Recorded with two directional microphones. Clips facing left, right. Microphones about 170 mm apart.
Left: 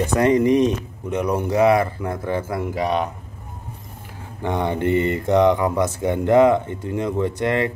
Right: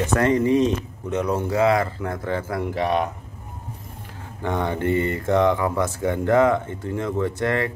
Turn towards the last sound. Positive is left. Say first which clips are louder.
# left 2 dB
turn(degrees=20)  # may be behind; listen again after turning